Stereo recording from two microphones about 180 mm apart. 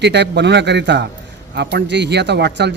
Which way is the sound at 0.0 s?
70° right (ahead or behind).